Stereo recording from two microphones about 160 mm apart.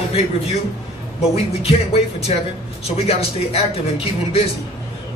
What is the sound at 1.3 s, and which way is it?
A man's voice, 40° left (ahead or behind).